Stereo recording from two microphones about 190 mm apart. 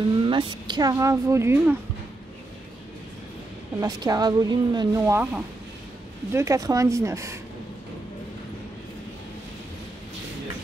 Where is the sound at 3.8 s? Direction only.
20° right (ahead or behind).